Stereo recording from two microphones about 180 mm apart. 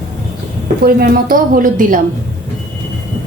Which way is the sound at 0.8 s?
55° right (ahead or behind).